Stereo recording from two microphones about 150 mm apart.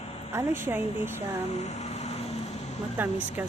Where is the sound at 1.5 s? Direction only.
50° left (ahead or behind).